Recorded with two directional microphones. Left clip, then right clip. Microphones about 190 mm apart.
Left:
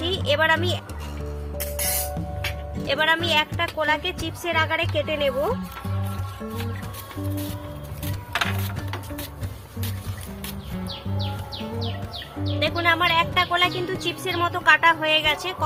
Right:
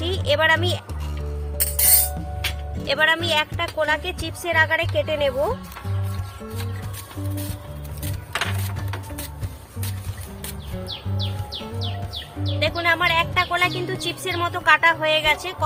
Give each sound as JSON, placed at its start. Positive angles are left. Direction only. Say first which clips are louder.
{"t": 0.0, "sound": "a sound", "louder": "right 1 dB", "side_deg": -20}
{"t": 2.8, "sound": "speech", "louder": "right 2 dB", "side_deg": -20}
{"t": 12.5, "sound": "speech", "louder": "right 1 dB", "side_deg": -10}